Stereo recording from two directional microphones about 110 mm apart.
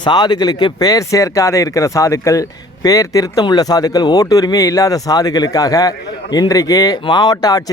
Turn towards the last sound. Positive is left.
turn(degrees=40)  # may be behind; listen again after turning